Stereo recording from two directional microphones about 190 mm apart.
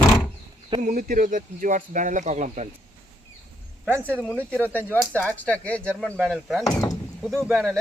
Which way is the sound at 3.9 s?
10° left (ahead or behind).